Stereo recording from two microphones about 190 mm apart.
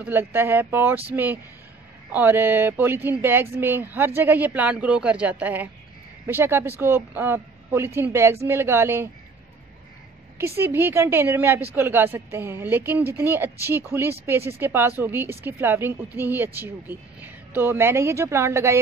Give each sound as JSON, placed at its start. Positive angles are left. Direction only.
{"t": 0.0, "sound": "speech", "side_deg": -10}
{"t": 10.3, "sound": "speech", "side_deg": -15}